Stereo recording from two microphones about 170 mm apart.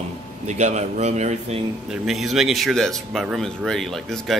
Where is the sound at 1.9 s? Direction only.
Centre (ahead or behind).